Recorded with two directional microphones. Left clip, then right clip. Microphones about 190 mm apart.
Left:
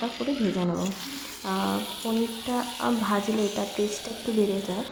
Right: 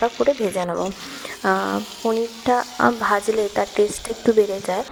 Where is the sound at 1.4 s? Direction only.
40° right (ahead or behind).